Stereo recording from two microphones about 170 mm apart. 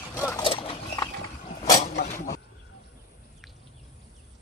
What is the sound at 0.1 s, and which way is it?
Clip-clop, 15° left (ahead or behind).